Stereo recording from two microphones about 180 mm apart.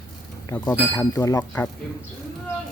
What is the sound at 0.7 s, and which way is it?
Speech, 15° left (ahead or behind).